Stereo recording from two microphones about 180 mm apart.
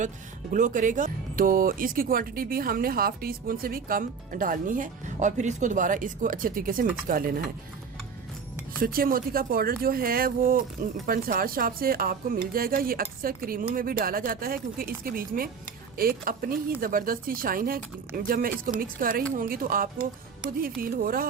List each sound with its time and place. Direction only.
0.5 s speech: 45° right (ahead or behind)
8.8 s speech: 55° right (ahead or behind)